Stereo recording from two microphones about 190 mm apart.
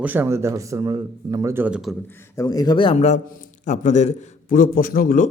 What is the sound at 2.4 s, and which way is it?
A man's voice, 20° left (ahead or behind).